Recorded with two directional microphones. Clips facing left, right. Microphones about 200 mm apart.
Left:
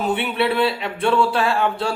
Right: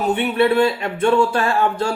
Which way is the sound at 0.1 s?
45° right (ahead or behind).